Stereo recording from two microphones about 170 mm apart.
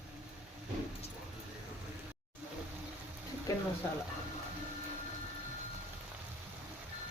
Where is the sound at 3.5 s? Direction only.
20° left (ahead or behind).